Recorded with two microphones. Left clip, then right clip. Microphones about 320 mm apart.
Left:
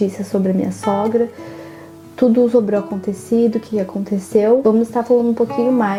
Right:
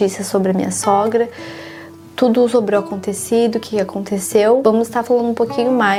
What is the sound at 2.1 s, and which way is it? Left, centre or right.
Speech, right.